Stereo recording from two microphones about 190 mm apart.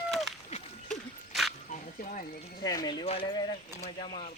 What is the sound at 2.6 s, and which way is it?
Speech, 20° left (ahead or behind).